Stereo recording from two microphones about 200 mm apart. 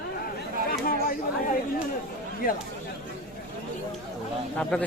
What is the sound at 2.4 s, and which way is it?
Speech, 45° left (ahead or behind).